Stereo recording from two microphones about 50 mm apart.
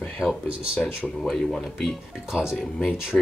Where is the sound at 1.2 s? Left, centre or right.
Centre.